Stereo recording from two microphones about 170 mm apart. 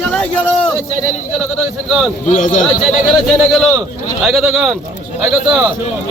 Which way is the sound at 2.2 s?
45° left (ahead or behind).